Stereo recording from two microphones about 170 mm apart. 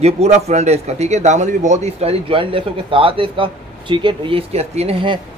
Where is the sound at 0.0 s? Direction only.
40° right (ahead or behind).